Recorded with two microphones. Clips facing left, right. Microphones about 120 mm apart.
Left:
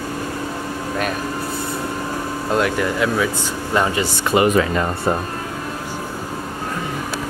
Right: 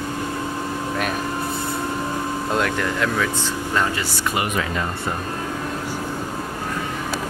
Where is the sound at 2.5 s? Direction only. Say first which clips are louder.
Left 5 dB; 5° left (ahead or behind); by 4.6 s 30° left (ahead or behind).